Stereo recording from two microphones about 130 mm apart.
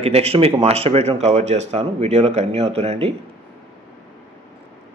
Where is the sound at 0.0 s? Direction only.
50° right (ahead or behind).